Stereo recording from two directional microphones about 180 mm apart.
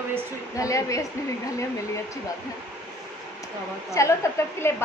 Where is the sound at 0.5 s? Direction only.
20° left (ahead or behind).